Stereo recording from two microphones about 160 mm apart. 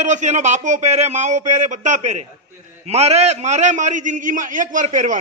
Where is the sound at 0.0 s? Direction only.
50° right (ahead or behind).